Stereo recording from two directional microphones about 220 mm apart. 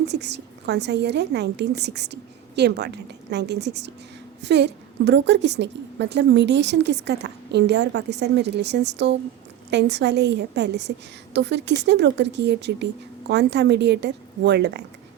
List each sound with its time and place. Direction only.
0.0 s a woman's voice: 50° right (ahead or behind)